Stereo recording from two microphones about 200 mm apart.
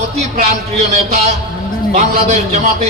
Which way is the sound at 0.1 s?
30° right (ahead or behind).